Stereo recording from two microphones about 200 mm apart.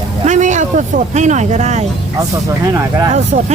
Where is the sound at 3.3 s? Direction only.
35° right (ahead or behind).